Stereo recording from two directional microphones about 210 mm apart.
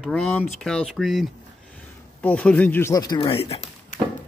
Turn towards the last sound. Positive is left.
turn(degrees=30)  # may be behind; listen again after turning